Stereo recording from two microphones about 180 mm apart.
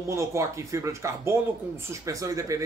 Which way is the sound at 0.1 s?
15° right (ahead or behind).